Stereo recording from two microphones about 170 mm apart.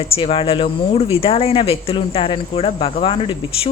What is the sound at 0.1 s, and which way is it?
Speech, 30° left (ahead or behind).